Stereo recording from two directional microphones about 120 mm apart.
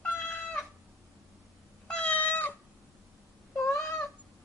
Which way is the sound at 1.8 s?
10° left (ahead or behind).